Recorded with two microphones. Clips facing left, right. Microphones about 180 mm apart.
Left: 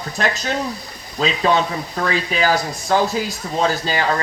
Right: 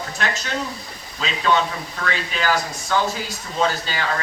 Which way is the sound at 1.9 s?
40° left (ahead or behind).